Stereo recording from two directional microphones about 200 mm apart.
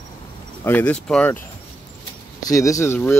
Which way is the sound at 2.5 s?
15° left (ahead or behind).